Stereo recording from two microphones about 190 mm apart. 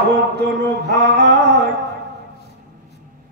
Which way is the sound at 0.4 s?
65° right (ahead or behind).